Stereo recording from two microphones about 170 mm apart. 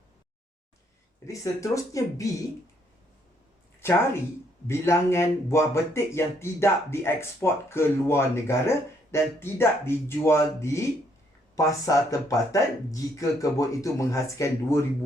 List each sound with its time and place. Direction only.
1.3 s speech: 20° left (ahead or behind)
3.8 s speech: 15° left (ahead or behind)